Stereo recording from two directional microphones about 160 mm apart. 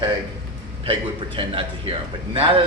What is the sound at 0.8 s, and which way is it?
Speech, 35° right (ahead or behind).